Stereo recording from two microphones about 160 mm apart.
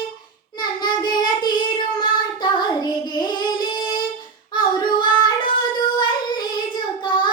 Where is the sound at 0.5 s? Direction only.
30° left (ahead or behind).